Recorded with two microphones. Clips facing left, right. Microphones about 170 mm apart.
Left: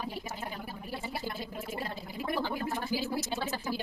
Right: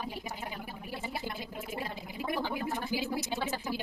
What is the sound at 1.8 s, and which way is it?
Gargling, 15° right (ahead or behind).